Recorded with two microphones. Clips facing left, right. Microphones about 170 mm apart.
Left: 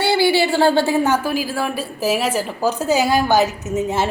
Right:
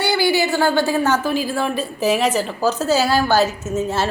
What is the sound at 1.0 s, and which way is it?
A woman's voice, 10° left (ahead or behind).